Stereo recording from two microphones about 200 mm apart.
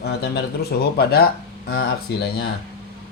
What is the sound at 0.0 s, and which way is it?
Speech, 55° left (ahead or behind).